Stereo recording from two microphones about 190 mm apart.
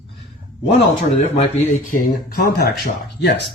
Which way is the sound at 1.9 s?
50° left (ahead or behind).